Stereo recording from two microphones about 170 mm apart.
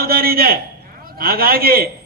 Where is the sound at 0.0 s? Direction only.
60° right (ahead or behind).